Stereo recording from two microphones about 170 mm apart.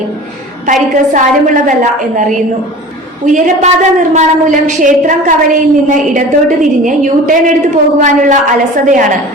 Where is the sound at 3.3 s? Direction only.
50° right (ahead or behind).